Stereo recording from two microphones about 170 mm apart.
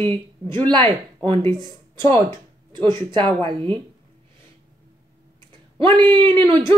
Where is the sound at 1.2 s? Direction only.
30° right (ahead or behind).